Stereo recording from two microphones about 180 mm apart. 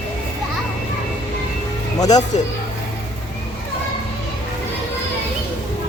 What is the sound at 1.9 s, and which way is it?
Speech, 20° left (ahead or behind).